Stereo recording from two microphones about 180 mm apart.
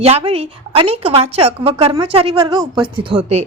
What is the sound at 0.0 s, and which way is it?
A woman's voice, 35° right (ahead or behind).